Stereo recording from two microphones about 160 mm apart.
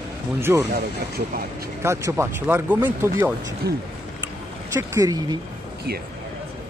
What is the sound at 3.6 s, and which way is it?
Speech, 90° right.